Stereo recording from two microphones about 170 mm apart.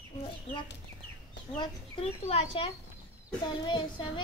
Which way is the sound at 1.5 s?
35° left (ahead or behind).